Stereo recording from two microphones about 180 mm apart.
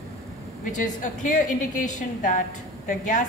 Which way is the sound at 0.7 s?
45° left (ahead or behind).